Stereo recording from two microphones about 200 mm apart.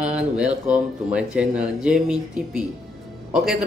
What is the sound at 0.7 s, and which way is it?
Speech, 5° right (ahead or behind).